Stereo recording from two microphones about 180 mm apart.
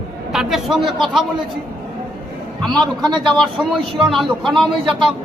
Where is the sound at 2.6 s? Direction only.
Centre (ahead or behind).